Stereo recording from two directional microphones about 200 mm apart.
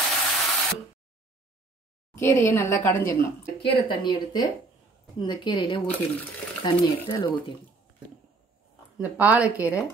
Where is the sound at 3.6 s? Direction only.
25° left (ahead or behind).